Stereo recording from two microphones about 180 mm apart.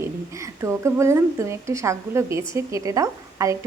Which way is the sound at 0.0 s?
15° right (ahead or behind).